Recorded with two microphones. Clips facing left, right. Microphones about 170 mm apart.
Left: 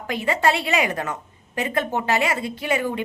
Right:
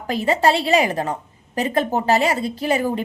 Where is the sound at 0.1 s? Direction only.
35° right (ahead or behind).